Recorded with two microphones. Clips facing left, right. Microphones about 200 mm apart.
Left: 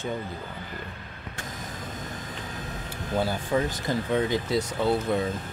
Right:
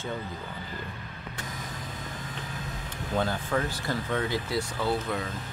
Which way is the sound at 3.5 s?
15° left (ahead or behind).